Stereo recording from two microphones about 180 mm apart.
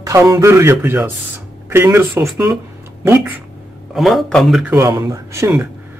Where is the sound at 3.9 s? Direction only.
Centre (ahead or behind).